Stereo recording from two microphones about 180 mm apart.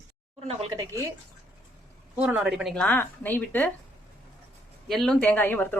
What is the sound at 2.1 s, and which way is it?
Speech, 5° right (ahead or behind).